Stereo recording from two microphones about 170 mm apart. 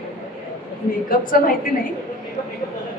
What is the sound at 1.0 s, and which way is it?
Speech, 55° left (ahead or behind).